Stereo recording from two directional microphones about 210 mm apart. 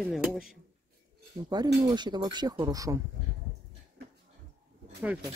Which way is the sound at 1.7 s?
20° right (ahead or behind).